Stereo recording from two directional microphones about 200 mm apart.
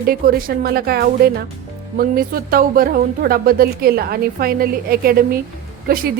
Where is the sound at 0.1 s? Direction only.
50° right (ahead or behind).